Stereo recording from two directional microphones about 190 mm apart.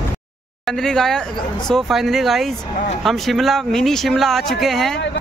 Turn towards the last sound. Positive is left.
turn(degrees=0)  # may be behind; listen again after turning